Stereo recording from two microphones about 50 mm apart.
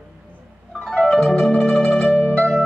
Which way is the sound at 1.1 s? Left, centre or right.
Centre.